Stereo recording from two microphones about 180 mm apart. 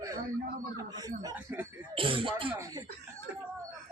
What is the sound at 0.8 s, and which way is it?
Speech, 20° right (ahead or behind).